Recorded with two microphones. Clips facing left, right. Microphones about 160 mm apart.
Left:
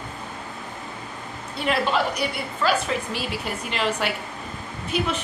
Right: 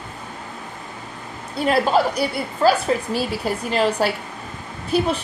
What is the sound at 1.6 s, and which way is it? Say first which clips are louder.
Speech: right 5 dB; 40° right (ahead or behind).